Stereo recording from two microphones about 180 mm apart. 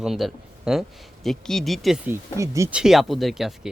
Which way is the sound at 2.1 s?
15° right (ahead or behind).